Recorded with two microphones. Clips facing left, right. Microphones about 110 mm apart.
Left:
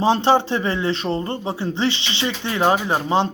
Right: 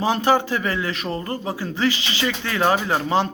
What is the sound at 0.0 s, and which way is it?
A man's voice, 25° left (ahead or behind).